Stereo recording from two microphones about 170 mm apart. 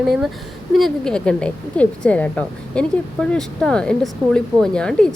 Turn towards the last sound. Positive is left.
turn(degrees=5)  # may be behind; listen again after turning